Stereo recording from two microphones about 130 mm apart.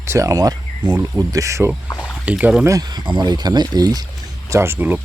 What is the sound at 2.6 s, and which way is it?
Speech, 30° right (ahead or behind).